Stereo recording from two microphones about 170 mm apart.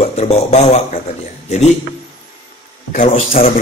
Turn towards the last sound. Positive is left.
turn(degrees=40)  # may be behind; listen again after turning